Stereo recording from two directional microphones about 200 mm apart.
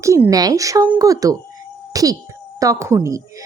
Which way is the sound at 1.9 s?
15° right (ahead or behind).